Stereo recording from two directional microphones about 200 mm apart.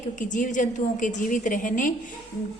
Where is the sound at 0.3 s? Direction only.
40° left (ahead or behind).